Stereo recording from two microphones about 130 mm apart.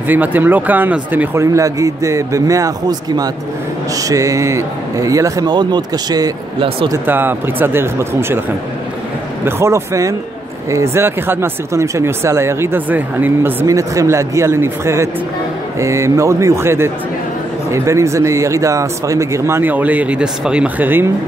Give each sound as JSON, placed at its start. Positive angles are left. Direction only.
{"t": 0.1, "sound": "speech", "side_deg": -15}
{"t": 7.1, "sound": "speech", "side_deg": -15}
{"t": 9.4, "sound": "speech", "side_deg": -20}